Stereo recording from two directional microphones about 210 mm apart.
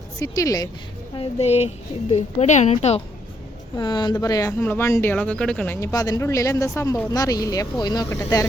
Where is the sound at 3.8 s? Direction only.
20° left (ahead or behind).